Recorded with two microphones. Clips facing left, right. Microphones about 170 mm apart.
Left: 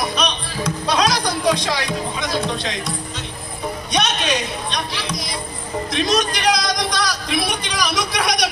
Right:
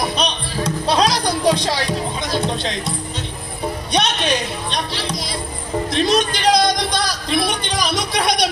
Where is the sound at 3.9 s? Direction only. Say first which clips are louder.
Right 1 dB; 30° right (ahead or behind).